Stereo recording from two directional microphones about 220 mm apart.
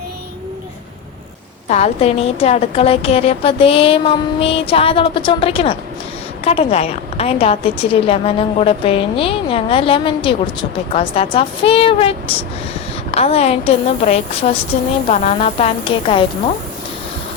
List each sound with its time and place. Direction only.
1.7 s a woman's voice: 30° left (ahead or behind)